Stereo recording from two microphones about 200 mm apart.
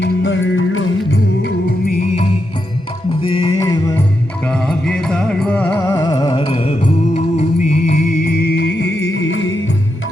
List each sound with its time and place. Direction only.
0.0 s music: 70° left (ahead or behind)
3.2 s music: 25° left (ahead or behind)
4.4 s music: 5° left (ahead or behind); by 8.0 s 35° left (ahead or behind)
8.2 s music: 50° left (ahead or behind); by 9.6 s 80° left